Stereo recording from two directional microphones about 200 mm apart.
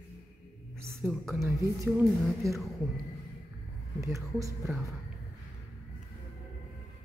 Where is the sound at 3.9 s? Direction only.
15° right (ahead or behind).